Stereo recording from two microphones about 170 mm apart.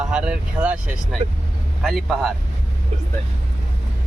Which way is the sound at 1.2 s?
35° right (ahead or behind).